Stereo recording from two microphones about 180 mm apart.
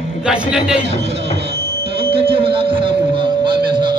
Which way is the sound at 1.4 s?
30° right (ahead or behind).